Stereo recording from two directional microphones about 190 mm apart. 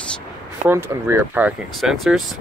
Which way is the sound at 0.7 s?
10° right (ahead or behind).